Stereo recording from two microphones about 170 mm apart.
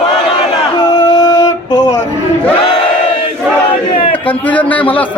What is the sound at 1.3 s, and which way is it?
Music, 15° left (ahead or behind).